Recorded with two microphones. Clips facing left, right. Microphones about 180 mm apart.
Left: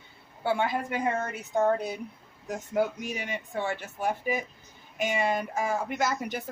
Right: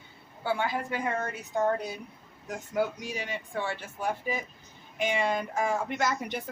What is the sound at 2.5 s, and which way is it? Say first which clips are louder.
A woman's voice: left 2 dB; 20° left (ahead or behind).